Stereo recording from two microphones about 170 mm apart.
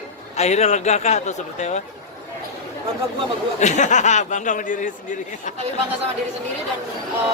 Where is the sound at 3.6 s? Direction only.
45° left (ahead or behind).